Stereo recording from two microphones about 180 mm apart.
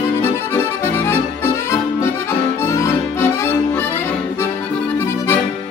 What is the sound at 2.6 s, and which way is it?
Accordion, 15° left (ahead or behind).